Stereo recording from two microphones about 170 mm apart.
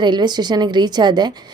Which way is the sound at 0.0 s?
25° right (ahead or behind).